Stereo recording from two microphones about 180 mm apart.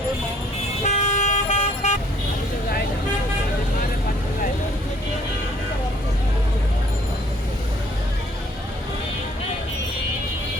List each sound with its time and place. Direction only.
0.9 s vehicle: 40° left (ahead or behind)